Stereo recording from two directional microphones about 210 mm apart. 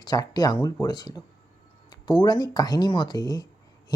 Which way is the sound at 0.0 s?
20° left (ahead or behind).